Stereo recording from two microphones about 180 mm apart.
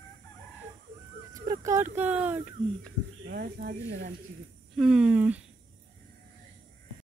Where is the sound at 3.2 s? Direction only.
60° right (ahead or behind).